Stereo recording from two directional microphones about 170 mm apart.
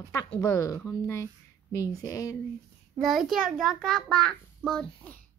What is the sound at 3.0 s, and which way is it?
A child's voice, centre (ahead or behind).